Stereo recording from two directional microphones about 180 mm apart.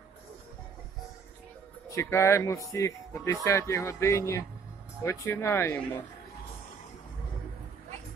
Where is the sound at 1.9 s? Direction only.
15° left (ahead or behind).